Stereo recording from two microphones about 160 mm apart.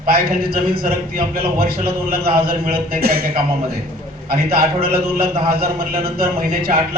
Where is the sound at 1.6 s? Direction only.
70° right (ahead or behind).